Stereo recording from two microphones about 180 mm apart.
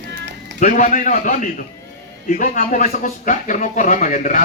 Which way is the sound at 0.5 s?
45° left (ahead or behind).